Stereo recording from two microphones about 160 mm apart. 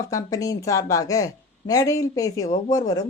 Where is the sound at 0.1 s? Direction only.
20° left (ahead or behind).